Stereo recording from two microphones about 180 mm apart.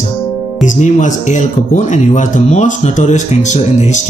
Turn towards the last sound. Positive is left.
turn(degrees=40)  # may be behind; listen again after turning